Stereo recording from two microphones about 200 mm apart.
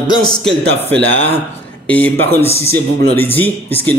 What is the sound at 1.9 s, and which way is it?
Speech, 10° left (ahead or behind).